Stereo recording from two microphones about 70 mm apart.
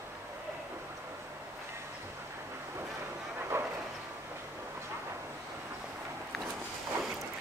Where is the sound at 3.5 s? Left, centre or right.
Right.